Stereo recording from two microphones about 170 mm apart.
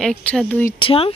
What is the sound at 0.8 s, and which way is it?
Speech, 35° left (ahead or behind).